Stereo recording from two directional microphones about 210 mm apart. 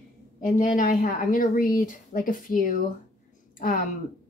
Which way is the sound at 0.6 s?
40° left (ahead or behind).